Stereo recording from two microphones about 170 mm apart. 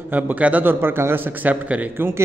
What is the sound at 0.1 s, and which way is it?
A man's voice, 10° right (ahead or behind).